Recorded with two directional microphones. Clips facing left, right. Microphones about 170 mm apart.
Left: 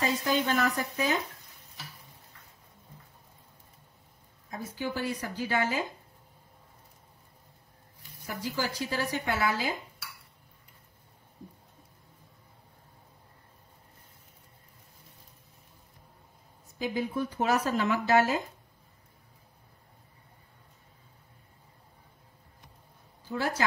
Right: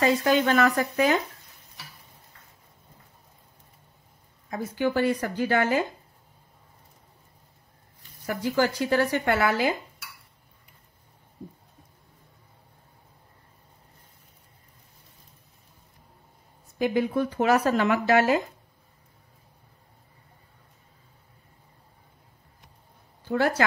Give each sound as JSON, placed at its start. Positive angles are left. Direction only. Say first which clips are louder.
{"t": 0.0, "sound": "speech", "louder": "right 7 dB", "side_deg": -70}
{"t": 4.5, "sound": "speech", "louder": "right 8 dB", "side_deg": -70}
{"t": 8.3, "sound": "speech", "louder": "right 9 dB", "side_deg": -60}
{"t": 16.7, "sound": "speech", "louder": "right 7 dB", "side_deg": -65}
{"t": 23.2, "sound": "a woman's voice", "louder": "right 8 dB", "side_deg": -65}